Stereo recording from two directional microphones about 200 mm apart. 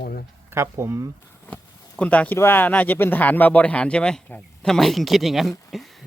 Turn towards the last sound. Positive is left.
turn(degrees=0)  # may be behind; listen again after turning